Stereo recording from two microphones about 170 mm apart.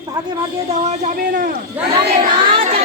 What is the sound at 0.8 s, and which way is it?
Speech, 45° right (ahead or behind).